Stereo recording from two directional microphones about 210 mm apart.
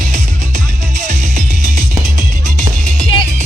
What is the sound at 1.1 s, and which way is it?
Music, 35° right (ahead or behind).